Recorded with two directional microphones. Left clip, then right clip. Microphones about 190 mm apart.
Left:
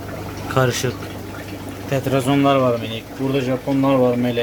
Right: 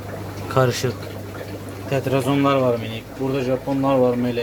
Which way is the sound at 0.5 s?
5° right (ahead or behind).